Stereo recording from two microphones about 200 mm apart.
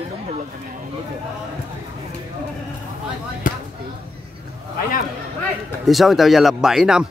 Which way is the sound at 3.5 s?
45° left (ahead or behind).